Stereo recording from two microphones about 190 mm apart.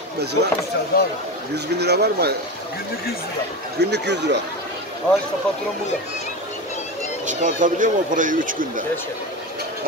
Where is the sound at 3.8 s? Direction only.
65° right (ahead or behind).